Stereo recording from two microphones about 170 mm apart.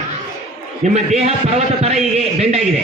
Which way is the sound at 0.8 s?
40° right (ahead or behind).